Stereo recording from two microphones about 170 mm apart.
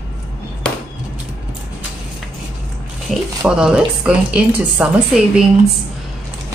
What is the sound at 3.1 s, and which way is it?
A woman's voice, 5° right (ahead or behind).